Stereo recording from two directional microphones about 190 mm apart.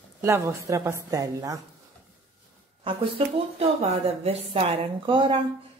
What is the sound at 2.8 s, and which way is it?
Speech, 25° right (ahead or behind).